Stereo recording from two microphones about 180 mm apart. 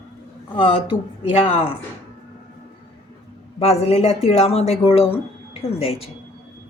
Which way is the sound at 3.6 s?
35° left (ahead or behind).